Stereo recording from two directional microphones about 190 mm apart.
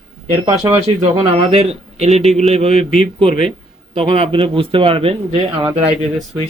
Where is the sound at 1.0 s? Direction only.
30° right (ahead or behind).